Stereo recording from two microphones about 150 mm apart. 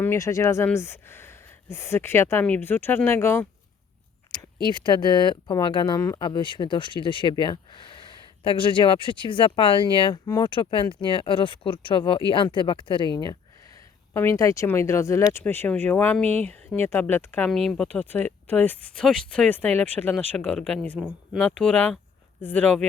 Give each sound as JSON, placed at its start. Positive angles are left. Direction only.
{"t": 0.0, "sound": "speech", "side_deg": 20}
{"t": 4.7, "sound": "speech", "side_deg": 30}
{"t": 14.1, "sound": "speech", "side_deg": 15}